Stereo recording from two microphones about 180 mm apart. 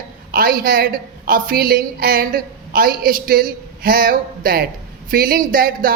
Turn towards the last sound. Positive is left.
turn(degrees=-55)  # may be behind; listen again after turning